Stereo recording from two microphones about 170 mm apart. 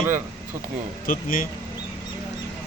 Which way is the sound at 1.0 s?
55° left (ahead or behind).